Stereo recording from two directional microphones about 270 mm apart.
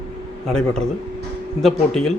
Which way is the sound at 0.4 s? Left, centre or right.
Centre.